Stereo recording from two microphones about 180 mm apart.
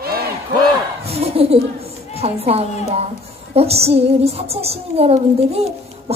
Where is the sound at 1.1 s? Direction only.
35° right (ahead or behind).